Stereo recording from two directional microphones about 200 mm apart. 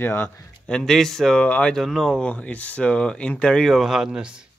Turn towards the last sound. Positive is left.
turn(degrees=-5)  # may be behind; listen again after turning